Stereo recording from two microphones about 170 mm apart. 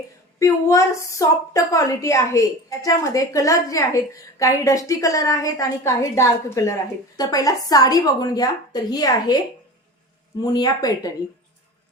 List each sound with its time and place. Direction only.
0.3 s a woman's voice: 20° left (ahead or behind)
10.4 s a woman's voice: 25° left (ahead or behind)